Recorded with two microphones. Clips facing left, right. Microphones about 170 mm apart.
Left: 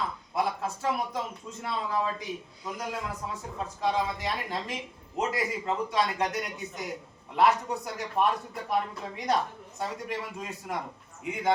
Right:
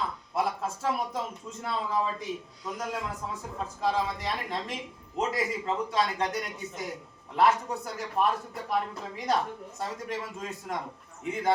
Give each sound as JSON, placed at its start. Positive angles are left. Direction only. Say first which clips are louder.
{"t": 0.3, "sound": "speech", "louder": "even", "side_deg": 0}